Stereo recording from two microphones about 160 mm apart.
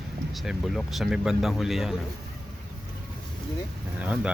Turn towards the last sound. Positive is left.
turn(degrees=-10)  # may be behind; listen again after turning